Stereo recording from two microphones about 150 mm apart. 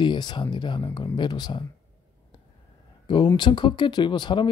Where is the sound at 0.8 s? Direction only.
20° left (ahead or behind).